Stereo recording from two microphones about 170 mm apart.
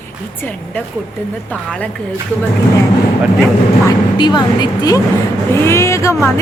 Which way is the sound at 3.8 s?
25° left (ahead or behind).